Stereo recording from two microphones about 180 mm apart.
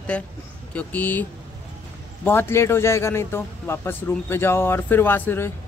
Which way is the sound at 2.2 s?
10° left (ahead or behind).